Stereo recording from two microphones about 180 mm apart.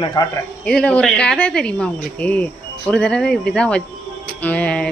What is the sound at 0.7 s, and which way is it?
Speech, 5° left (ahead or behind).